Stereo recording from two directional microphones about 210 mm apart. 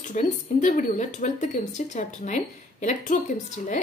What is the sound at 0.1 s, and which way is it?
Speech, 35° left (ahead or behind).